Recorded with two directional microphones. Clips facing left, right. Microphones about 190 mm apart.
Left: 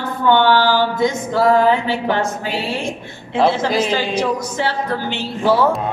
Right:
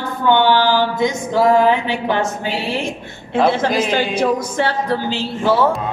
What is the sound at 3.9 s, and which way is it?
Speech, 55° right (ahead or behind).